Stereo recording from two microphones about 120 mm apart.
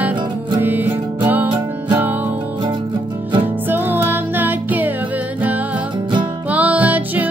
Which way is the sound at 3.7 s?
15° right (ahead or behind).